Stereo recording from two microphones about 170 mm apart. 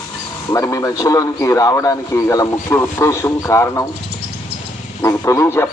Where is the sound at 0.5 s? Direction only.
20° left (ahead or behind).